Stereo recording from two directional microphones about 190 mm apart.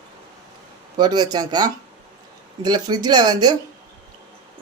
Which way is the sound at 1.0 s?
20° right (ahead or behind).